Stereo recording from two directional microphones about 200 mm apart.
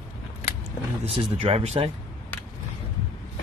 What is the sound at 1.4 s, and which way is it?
Speech, 30° right (ahead or behind).